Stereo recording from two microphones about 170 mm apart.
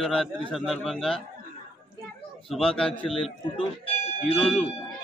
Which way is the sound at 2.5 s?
5° left (ahead or behind).